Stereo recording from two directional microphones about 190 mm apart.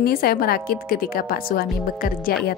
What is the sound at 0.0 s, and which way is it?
A woman's voice, 50° left (ahead or behind).